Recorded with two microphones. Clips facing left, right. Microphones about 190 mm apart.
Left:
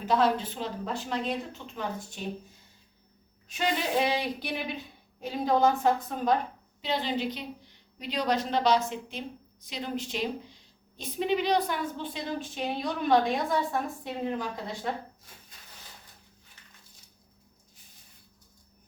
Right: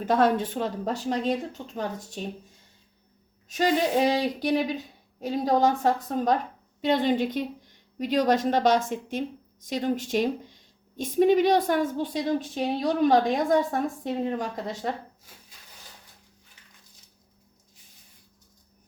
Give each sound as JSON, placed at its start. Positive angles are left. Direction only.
{"t": 0.0, "sound": "speech", "side_deg": -50}
{"t": 3.5, "sound": "speech", "side_deg": -40}
{"t": 6.8, "sound": "speech", "side_deg": -50}